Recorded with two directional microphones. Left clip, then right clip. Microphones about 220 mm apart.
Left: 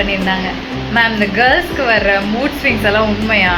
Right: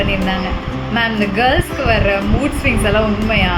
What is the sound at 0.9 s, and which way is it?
Speech, 15° right (ahead or behind).